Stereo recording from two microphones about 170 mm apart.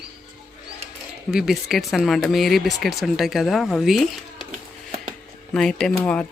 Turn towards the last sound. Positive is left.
turn(degrees=10)  # may be behind; listen again after turning